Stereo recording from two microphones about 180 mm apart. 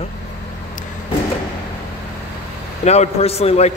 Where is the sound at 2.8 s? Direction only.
35° left (ahead or behind).